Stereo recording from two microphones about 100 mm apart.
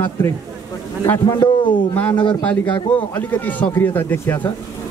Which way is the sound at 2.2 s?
50° left (ahead or behind).